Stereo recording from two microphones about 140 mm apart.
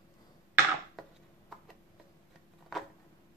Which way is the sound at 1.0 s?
Centre (ahead or behind).